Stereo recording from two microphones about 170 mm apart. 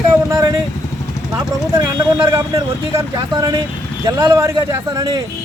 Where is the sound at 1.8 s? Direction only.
20° right (ahead or behind).